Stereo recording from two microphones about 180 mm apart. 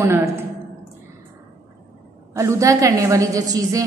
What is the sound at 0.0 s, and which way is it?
Speech, 15° right (ahead or behind).